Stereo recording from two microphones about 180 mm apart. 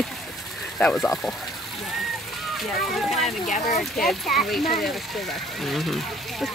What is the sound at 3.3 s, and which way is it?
Speech, 45° left (ahead or behind).